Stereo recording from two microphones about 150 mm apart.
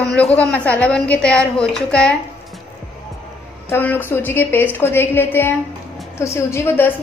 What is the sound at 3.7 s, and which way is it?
A woman's voice, 15° left (ahead or behind).